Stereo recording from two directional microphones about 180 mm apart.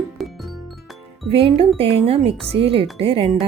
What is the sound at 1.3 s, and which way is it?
Speech, 30° right (ahead or behind).